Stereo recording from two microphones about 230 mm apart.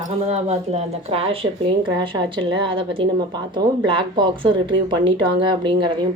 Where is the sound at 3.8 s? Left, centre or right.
Right.